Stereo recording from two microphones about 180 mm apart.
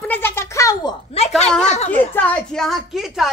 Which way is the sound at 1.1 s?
35° left (ahead or behind).